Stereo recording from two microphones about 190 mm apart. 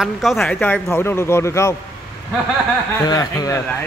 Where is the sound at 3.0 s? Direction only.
20° left (ahead or behind).